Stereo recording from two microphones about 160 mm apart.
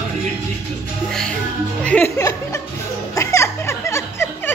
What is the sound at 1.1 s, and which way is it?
Music, 5° left (ahead or behind).